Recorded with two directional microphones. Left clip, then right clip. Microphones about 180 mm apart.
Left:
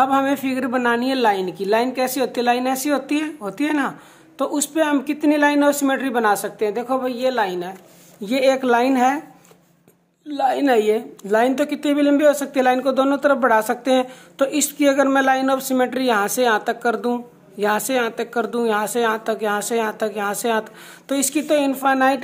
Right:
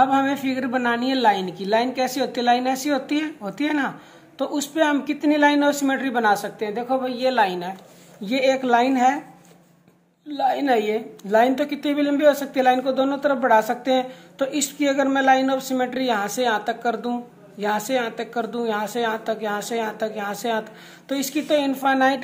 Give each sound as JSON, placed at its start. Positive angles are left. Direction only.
{"t": 0.0, "sound": "a woman's voice", "side_deg": 30}
{"t": 7.3, "sound": "a woman's voice", "side_deg": 10}
{"t": 8.2, "sound": "a woman's voice", "side_deg": 30}
{"t": 10.3, "sound": "a woman's voice", "side_deg": 35}